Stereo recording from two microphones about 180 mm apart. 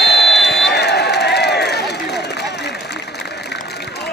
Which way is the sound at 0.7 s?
70° left (ahead or behind).